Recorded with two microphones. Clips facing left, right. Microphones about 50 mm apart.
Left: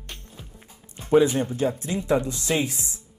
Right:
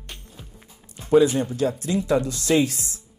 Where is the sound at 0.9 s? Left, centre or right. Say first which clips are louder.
Right 2 dB; left.